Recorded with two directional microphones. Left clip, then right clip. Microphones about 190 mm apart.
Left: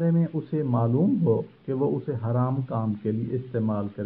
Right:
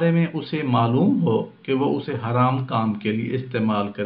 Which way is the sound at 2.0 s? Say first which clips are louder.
Right 7 dB; 30° left (ahead or behind).